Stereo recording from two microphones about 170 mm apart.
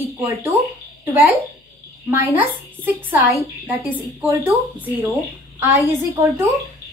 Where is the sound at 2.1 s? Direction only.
15° right (ahead or behind).